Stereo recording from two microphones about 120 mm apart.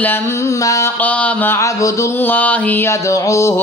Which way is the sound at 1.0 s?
10° left (ahead or behind).